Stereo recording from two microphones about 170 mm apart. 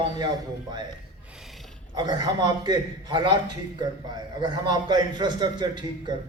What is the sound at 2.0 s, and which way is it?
A man's voice, 25° right (ahead or behind).